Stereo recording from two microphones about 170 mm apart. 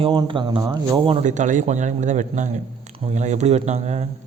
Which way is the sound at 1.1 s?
45° right (ahead or behind).